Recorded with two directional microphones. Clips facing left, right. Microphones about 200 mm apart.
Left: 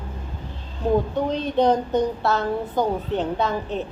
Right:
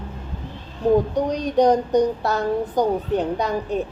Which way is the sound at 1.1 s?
15° right (ahead or behind).